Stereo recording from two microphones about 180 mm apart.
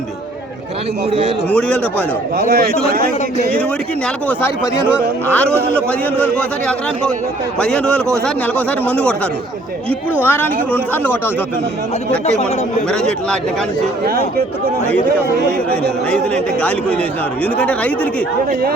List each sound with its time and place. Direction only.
1.5 s a man's voice: 5° left (ahead or behind)
2.5 s a man's voice: 60° right (ahead or behind)
4.3 s a man's voice: 10° left (ahead or behind)
10.2 s a man's voice: 10° left (ahead or behind)
12.9 s a man's voice: 5° left (ahead or behind)
14.0 s a man's voice: 55° right (ahead or behind)
15.7 s a man's voice: 5° left (ahead or behind)